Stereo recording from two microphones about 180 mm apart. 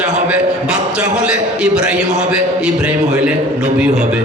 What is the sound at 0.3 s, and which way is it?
A man's voice, 5° right (ahead or behind).